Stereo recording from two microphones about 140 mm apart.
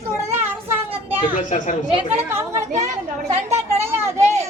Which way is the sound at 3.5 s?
20° right (ahead or behind).